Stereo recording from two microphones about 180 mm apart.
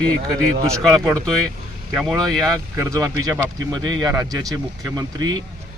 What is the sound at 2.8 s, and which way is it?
Speech, 20° right (ahead or behind).